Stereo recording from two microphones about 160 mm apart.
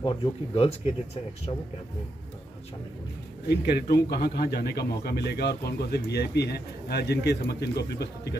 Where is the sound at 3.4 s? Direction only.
85° left.